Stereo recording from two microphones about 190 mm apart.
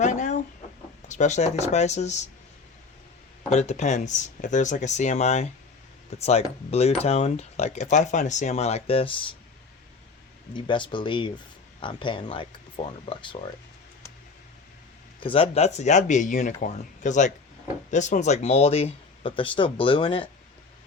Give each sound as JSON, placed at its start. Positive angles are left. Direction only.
{"t": 0.0, "sound": "chicken", "side_deg": 40}
{"t": 1.0, "sound": "speech", "side_deg": 40}
{"t": 3.5, "sound": "speech", "side_deg": 35}
{"t": 10.5, "sound": "speech", "side_deg": 25}
{"t": 15.2, "sound": "speech", "side_deg": 30}